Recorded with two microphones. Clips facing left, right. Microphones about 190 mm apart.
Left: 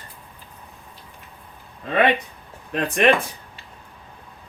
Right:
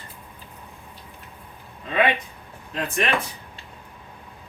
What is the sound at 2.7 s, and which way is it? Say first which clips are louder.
Speech: left 7 dB; 65° left (ahead or behind).